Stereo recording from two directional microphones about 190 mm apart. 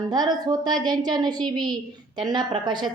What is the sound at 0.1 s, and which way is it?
A woman's voice, 20° right (ahead or behind).